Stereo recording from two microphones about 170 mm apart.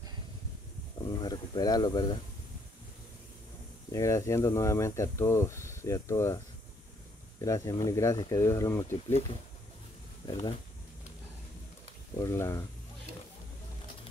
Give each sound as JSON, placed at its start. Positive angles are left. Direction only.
{"t": 1.0, "sound": "speech", "side_deg": 25}
{"t": 3.9, "sound": "speech", "side_deg": 20}
{"t": 7.4, "sound": "speech", "side_deg": 20}
{"t": 10.2, "sound": "speech", "side_deg": 25}
{"t": 12.2, "sound": "speech", "side_deg": 15}